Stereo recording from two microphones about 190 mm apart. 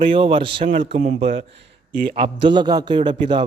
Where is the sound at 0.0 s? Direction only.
25° right (ahead or behind).